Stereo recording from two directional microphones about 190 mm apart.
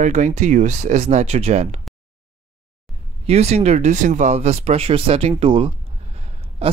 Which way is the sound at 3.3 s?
35° right (ahead or behind).